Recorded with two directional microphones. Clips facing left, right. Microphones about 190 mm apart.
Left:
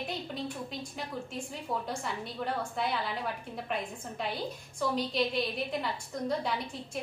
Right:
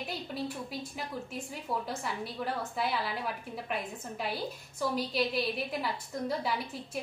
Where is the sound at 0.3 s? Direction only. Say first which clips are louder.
Right 1 dB; 5° right (ahead or behind).